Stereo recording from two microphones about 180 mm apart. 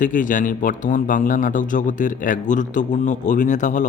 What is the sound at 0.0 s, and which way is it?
Speech, 45° left (ahead or behind).